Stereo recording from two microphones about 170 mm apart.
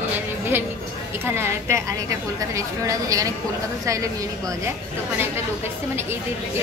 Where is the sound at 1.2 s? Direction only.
15° right (ahead or behind).